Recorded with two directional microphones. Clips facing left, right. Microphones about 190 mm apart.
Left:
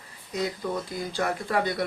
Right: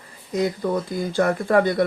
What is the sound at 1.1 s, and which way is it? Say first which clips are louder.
Speech: right 9 dB; 50° right (ahead or behind).